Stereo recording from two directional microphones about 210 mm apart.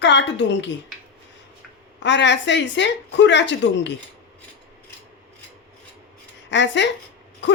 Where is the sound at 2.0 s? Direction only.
55° left (ahead or behind).